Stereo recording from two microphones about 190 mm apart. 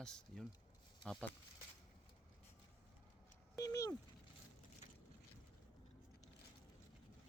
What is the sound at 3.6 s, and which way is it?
Speech, 15° left (ahead or behind).